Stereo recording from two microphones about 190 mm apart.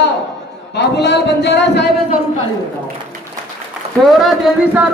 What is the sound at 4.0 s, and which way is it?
Speech, centre (ahead or behind).